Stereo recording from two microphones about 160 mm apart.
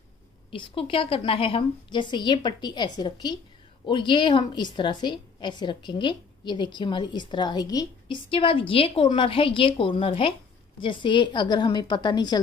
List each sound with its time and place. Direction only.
0.5 s a woman's voice: 35° left (ahead or behind)